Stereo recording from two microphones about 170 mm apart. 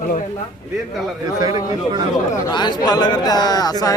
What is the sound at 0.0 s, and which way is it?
Speech, 45° left (ahead or behind).